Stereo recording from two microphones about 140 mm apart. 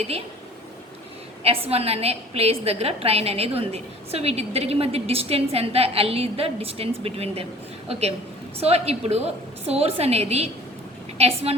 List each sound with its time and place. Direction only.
1.5 s a woman's voice: 45° right (ahead or behind)